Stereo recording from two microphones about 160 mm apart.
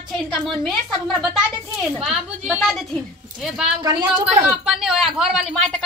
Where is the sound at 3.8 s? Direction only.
25° right (ahead or behind).